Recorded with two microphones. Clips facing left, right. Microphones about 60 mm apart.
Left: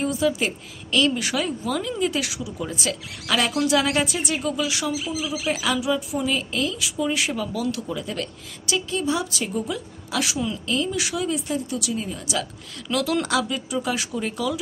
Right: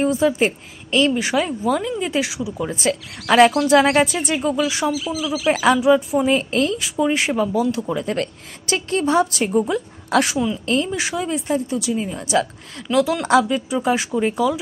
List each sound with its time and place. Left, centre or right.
0.0 s a woman's voice: right
7.8 s speech: right
10.7 s speech: right